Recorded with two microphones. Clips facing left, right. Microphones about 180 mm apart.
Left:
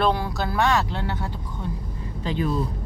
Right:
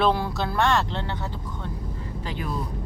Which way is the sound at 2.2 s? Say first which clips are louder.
Left 8 dB; 20° left (ahead or behind).